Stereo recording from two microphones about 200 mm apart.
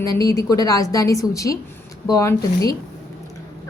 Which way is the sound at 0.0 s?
15° left (ahead or behind).